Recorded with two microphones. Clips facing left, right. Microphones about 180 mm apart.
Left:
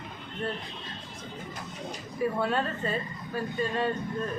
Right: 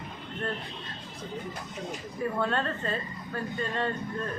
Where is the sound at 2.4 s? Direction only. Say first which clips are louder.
Left 1 dB; 10° left (ahead or behind).